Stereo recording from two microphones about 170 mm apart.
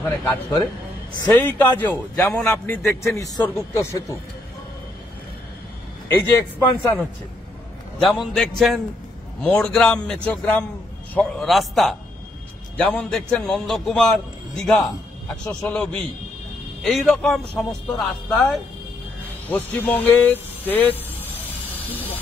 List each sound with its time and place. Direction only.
0.0 s a man's voice: 15° left (ahead or behind)
3.2 s a man's voice: 15° left (ahead or behind)
6.3 s a man's voice: 10° left (ahead or behind)
19.5 s a man's voice: 10° left (ahead or behind)